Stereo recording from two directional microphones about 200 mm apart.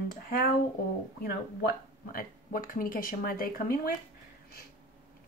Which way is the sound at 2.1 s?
45° left (ahead or behind).